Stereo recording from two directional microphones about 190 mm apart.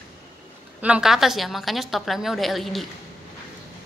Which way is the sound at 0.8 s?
5° right (ahead or behind).